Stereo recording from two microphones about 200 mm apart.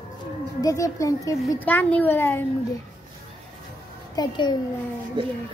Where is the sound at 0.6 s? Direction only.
15° left (ahead or behind).